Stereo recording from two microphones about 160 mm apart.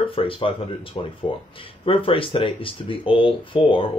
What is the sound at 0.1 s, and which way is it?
Speech, 35° left (ahead or behind).